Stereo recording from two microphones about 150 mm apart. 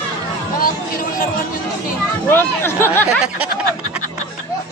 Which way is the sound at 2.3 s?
15° left (ahead or behind).